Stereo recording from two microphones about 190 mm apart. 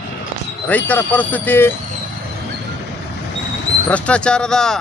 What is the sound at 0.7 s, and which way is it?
Speech, 10° left (ahead or behind).